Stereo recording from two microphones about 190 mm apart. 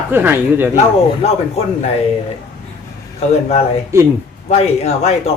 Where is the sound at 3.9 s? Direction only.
15° right (ahead or behind).